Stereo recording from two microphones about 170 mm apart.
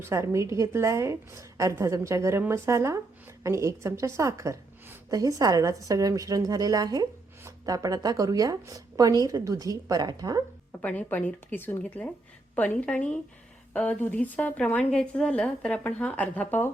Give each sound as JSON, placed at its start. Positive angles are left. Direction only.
{"t": 0.0, "sound": "a woman's voice", "side_deg": -15}
{"t": 10.7, "sound": "a woman's voice", "side_deg": 10}